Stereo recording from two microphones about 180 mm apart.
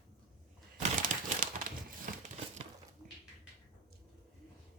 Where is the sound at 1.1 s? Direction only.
45° right (ahead or behind).